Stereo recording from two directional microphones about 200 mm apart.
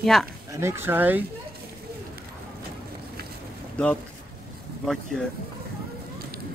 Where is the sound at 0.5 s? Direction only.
10° right (ahead or behind).